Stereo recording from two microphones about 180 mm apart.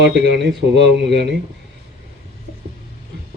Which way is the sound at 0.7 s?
75° right (ahead or behind).